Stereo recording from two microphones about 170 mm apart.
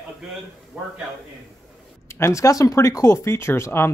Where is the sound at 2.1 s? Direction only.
15° left (ahead or behind).